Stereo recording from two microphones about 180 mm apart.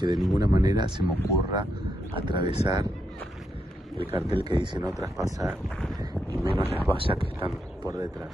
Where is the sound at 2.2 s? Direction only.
25° right (ahead or behind).